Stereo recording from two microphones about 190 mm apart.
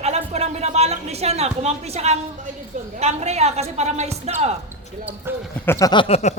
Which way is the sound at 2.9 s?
35° right (ahead or behind).